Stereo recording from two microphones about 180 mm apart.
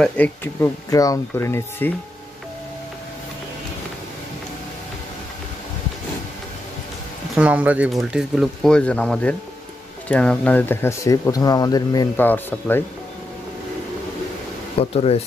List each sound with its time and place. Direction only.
0.0 s speech: 10° left (ahead or behind)
7.3 s speech: 5° right (ahead or behind); by 12.8 s 10° left (ahead or behind)
14.8 s speech: 35° left (ahead or behind)